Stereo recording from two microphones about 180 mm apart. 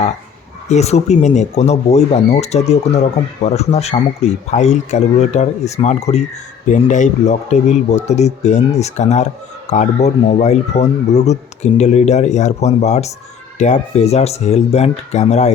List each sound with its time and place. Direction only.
0.7 s speech: 40° left (ahead or behind)